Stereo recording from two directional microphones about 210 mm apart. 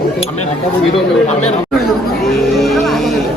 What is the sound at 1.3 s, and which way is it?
Speech, 30° left (ahead or behind).